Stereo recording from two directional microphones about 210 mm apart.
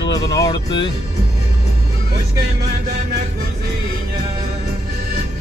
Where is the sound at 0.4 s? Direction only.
20° left (ahead or behind).